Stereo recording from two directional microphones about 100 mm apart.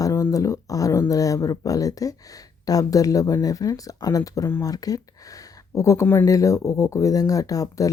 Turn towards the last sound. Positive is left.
turn(degrees=35)  # may be behind; listen again after turning